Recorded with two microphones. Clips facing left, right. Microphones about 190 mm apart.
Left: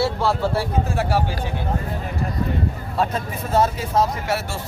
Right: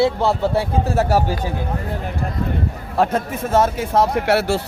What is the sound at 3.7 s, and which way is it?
Speech, 60° right (ahead or behind).